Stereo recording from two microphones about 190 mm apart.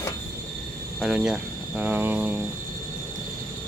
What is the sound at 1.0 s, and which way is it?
Speech, 5° right (ahead or behind).